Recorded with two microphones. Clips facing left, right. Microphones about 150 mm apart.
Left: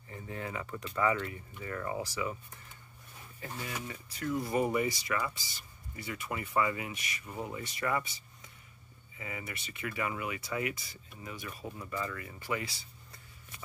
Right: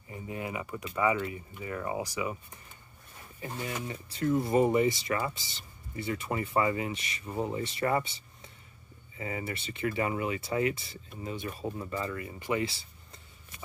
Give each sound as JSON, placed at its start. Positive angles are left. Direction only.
{"t": 0.1, "sound": "speech", "side_deg": -15}
{"t": 9.2, "sound": "speech", "side_deg": -30}